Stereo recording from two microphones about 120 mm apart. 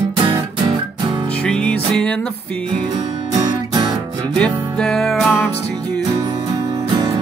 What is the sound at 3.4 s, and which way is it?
Music, 35° right (ahead or behind).